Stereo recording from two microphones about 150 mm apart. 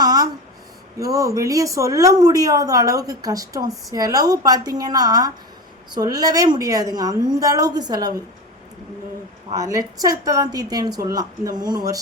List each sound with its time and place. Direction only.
0.0 s a sound: 25° right (ahead or behind)
0.9 s speech: 20° right (ahead or behind)
9.5 s speech: 25° right (ahead or behind)